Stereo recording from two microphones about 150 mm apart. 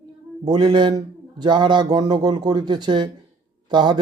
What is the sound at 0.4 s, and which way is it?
A man's voice, 30° right (ahead or behind).